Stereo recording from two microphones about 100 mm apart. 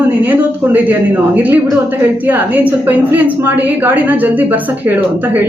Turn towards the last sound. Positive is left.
turn(degrees=-15)  # may be behind; listen again after turning